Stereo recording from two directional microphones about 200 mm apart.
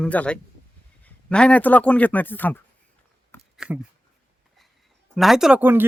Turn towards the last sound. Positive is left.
turn(degrees=-10)  # may be behind; listen again after turning